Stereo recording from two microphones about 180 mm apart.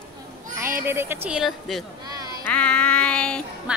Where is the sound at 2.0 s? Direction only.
20° right (ahead or behind).